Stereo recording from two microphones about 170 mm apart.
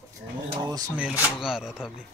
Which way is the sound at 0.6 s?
20° right (ahead or behind).